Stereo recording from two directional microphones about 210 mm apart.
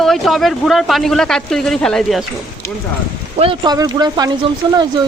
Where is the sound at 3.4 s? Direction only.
20° right (ahead or behind).